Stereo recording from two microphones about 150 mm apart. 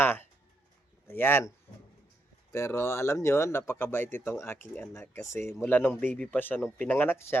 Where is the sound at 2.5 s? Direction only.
15° left (ahead or behind).